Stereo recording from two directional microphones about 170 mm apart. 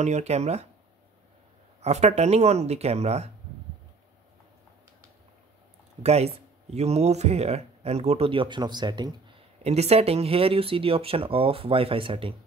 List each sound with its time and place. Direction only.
0.0 s speech: 40° right (ahead or behind)
1.8 s speech: 40° right (ahead or behind)
6.0 s speech: 40° right (ahead or behind)
9.6 s speech: 40° right (ahead or behind)